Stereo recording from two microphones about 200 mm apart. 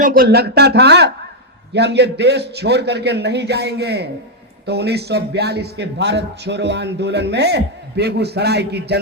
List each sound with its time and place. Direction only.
0.0 s a man's voice: 45° right (ahead or behind)